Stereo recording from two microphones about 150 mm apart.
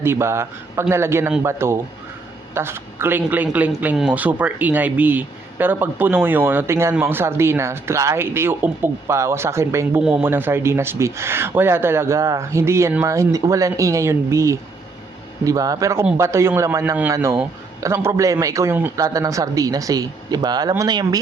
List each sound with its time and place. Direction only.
0.0 s a man's voice: 15° right (ahead or behind)
10.0 s a man's voice: 5° right (ahead or behind); by 21.2 s 25° right (ahead or behind)